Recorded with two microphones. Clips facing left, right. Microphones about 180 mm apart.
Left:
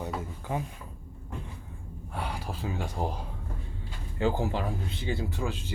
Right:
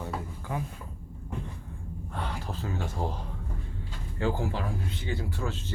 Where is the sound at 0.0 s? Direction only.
20° left (ahead or behind).